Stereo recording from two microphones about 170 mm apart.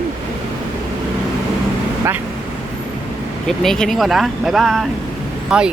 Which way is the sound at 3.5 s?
5° left (ahead or behind).